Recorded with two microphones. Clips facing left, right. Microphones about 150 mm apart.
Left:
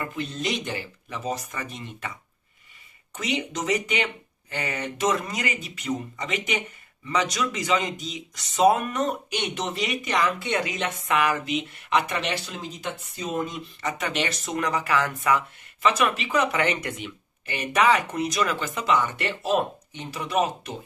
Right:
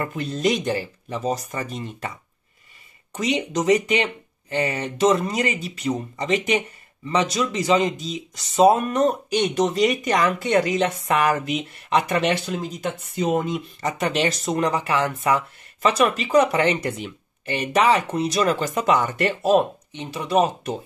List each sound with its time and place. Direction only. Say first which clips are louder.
0.0 s speech: right 7 dB; 40° right (ahead or behind)
3.2 s speech: right 5 dB; 35° right (ahead or behind)
13.1 s speech: right 8 dB; 65° right (ahead or behind)
13.7 s speech: right 4 dB; 35° right (ahead or behind)
19.9 s speech: right 6 dB; 25° right (ahead or behind)